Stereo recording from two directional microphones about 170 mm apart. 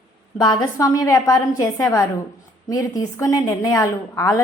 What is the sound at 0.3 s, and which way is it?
A woman's voice, 25° left (ahead or behind).